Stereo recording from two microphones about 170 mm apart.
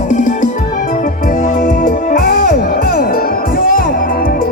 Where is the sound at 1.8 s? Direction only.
60° left (ahead or behind).